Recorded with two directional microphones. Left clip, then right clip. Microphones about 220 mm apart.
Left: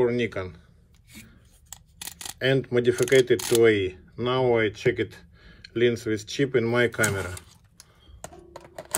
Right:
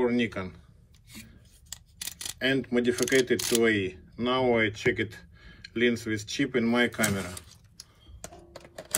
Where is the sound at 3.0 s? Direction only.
20° left (ahead or behind).